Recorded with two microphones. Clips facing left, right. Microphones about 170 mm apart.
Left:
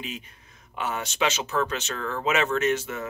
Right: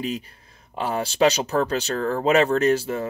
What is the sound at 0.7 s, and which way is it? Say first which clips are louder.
Speech: right 6 dB; 35° right (ahead or behind).